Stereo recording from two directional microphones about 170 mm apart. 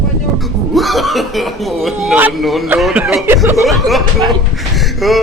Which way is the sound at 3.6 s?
Centre (ahead or behind).